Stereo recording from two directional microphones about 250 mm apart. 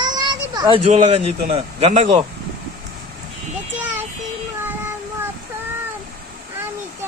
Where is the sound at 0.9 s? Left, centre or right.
Right.